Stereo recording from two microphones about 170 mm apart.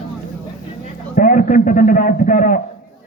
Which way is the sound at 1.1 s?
50° left (ahead or behind).